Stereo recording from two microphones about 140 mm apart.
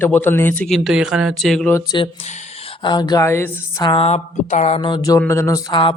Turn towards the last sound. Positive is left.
turn(degrees=40)  # may be behind; listen again after turning